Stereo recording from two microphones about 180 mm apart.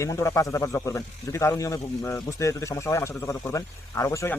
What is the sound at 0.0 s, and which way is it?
A man's voice, 15° left (ahead or behind).